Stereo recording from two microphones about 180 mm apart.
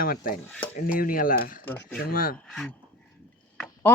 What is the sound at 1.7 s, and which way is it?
Speech, 10° left (ahead or behind).